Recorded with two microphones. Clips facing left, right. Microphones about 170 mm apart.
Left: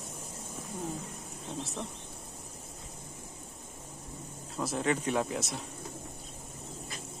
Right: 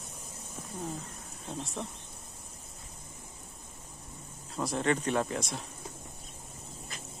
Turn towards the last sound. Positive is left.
turn(degrees=5)  # may be behind; listen again after turning